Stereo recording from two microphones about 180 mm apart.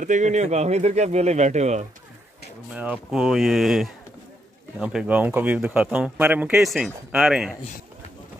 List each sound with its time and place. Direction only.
0.0 s speech: 40° right (ahead or behind)
2.7 s speech: 5° right (ahead or behind)